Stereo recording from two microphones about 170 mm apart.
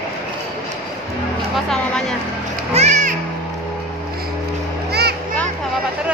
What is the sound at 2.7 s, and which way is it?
Music, 45° right (ahead or behind).